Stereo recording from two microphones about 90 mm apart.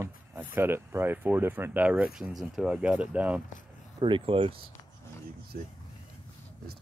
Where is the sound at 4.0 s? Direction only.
65° right (ahead or behind).